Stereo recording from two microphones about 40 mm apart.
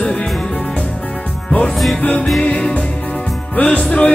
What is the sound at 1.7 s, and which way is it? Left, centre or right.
Music, centre.